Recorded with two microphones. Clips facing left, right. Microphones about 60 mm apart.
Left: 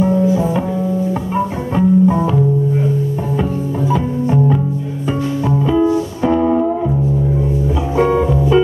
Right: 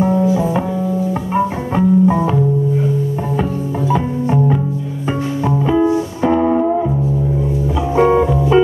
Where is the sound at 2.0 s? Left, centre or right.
Centre.